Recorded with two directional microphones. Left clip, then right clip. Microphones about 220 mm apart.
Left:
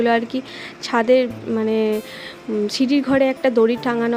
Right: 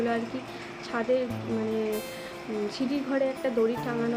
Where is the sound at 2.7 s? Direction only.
45° left (ahead or behind).